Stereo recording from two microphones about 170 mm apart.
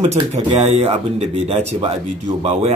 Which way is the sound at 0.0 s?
40° right (ahead or behind).